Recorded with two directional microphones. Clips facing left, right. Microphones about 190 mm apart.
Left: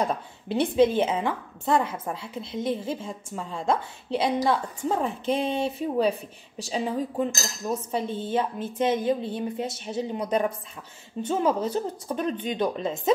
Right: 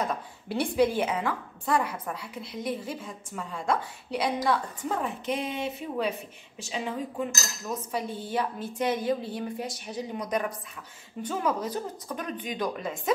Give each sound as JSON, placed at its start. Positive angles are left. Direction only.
{"t": 0.0, "sound": "a woman's voice", "side_deg": 25}
{"t": 6.6, "sound": "cutlery", "side_deg": 35}
{"t": 7.9, "sound": "a woman's voice", "side_deg": 25}